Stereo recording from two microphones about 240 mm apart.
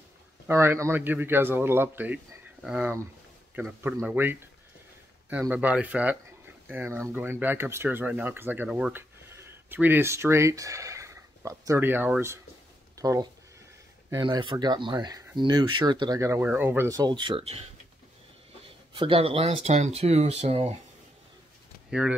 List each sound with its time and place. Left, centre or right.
0.5 s speech: centre
18.9 s speech: right